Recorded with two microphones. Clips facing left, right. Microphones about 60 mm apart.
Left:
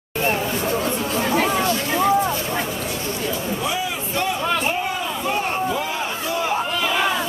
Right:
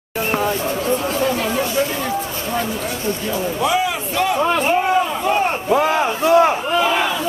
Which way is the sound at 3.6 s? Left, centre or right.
Right.